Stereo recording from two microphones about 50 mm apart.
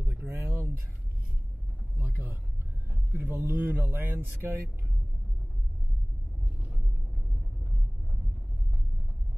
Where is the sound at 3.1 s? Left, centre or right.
Right.